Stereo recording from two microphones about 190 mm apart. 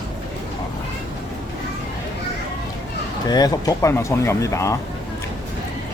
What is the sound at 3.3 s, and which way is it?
Speech, 20° left (ahead or behind).